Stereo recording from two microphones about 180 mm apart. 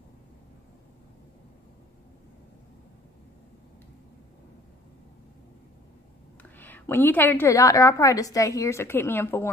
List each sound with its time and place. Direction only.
6.6 s a woman's voice: 10° left (ahead or behind)